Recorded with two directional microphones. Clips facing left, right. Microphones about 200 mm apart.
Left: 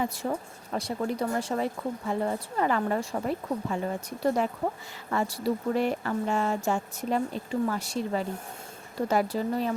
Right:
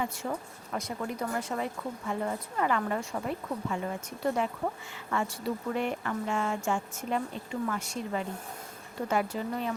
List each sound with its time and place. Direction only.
0.0 s speech: 35° left (ahead or behind)
5.1 s speech: 35° left (ahead or behind)